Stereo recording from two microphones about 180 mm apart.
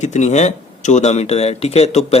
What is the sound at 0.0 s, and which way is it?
A man's voice, 40° left (ahead or behind).